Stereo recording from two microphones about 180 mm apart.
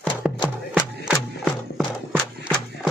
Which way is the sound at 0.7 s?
5° right (ahead or behind).